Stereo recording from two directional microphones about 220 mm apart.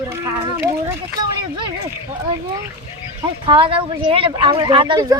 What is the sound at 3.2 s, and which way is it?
Speech, 20° right (ahead or behind).